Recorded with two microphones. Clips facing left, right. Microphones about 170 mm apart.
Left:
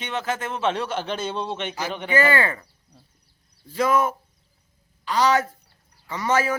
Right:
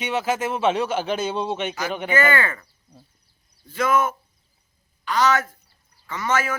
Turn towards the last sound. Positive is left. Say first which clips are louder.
# left 2 dB
turn(degrees=35)  # may be behind; listen again after turning